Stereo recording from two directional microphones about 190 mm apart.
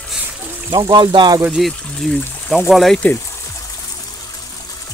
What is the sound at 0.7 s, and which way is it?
Speech, 20° right (ahead or behind).